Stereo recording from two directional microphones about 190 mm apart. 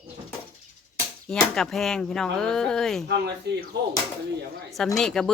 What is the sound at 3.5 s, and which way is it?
Speech, 65° right (ahead or behind).